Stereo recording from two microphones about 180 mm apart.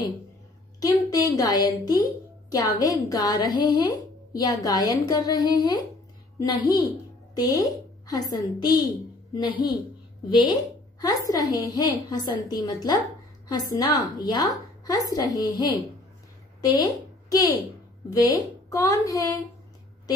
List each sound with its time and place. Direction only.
0.7 s a woman's voice: 20° left (ahead or behind)